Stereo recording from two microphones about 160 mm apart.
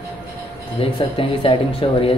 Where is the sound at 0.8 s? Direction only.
30° left (ahead or behind).